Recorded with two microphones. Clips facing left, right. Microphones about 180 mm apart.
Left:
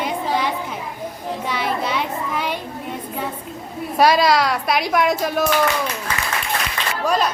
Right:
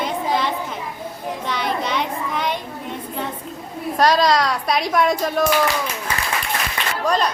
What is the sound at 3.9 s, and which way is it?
A woman's voice, 10° left (ahead or behind).